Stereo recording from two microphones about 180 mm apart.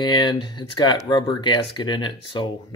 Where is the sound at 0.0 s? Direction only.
25° left (ahead or behind).